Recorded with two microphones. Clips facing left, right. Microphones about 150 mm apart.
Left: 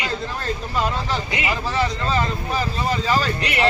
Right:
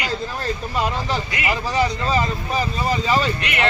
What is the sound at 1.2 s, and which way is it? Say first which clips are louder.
Speech: even; 25° left (ahead or behind).